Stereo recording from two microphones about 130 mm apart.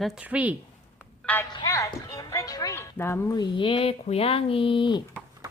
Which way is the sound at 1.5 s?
25° left (ahead or behind).